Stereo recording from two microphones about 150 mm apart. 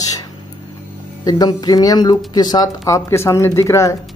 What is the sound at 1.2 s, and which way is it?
Speech, 25° left (ahead or behind).